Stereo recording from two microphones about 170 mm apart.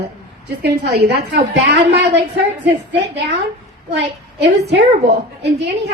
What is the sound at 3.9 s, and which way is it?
A woman's voice, 85° right.